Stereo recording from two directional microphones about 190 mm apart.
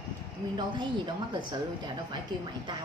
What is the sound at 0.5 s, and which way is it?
A woman's voice, 25° right (ahead or behind).